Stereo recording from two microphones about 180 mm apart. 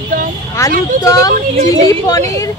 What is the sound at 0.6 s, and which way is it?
Speech, 20° left (ahead or behind).